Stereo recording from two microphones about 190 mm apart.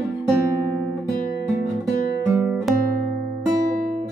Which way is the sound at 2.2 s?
5° right (ahead or behind).